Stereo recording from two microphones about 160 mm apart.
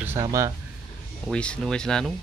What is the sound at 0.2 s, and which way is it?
Speech, 20° right (ahead or behind).